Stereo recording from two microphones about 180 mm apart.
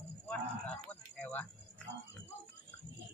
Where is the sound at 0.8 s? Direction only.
10° left (ahead or behind).